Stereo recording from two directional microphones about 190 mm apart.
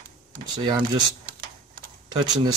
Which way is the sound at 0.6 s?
25° right (ahead or behind).